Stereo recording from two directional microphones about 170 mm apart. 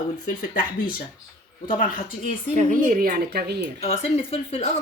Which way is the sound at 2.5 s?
45° right (ahead or behind).